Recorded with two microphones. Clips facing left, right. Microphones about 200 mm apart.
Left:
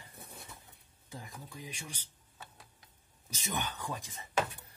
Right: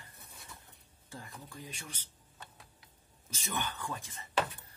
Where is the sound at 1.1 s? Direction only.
15° left (ahead or behind).